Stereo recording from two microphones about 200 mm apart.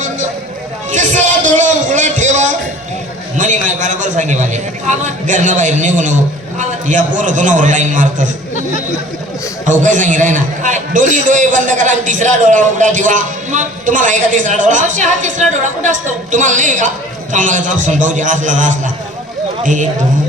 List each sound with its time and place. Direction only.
0.9 s a sound: 40° right (ahead or behind)
5.2 s a man's voice: 40° right (ahead or behind)
9.6 s a man's voice: 40° right (ahead or behind)